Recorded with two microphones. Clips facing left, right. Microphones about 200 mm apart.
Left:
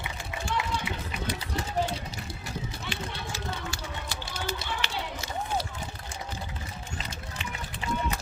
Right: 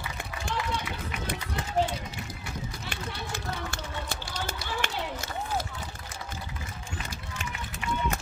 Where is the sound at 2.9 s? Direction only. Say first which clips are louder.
Even; 55° right (ahead or behind).